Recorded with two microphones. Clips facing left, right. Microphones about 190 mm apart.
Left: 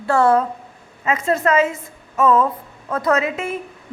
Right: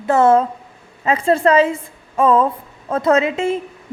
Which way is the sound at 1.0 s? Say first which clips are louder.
Right 4 dB; 30° right (ahead or behind).